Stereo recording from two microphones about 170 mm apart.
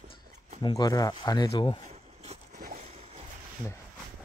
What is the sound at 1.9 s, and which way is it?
Zipper, 40° right (ahead or behind).